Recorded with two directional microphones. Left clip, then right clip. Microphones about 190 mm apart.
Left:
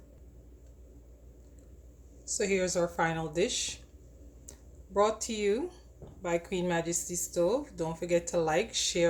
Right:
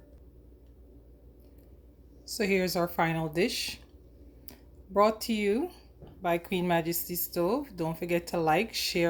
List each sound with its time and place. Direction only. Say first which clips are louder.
2.2 s speech: right 1 dB; 35° right (ahead or behind)
5.2 s speech: right 1 dB; 40° right (ahead or behind)